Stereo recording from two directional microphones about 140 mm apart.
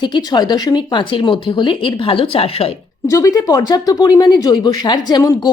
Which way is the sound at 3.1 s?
25° left (ahead or behind).